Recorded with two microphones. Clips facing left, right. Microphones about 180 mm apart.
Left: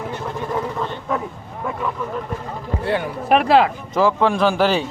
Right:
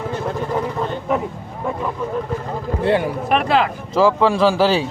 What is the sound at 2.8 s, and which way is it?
Speech, 20° right (ahead or behind).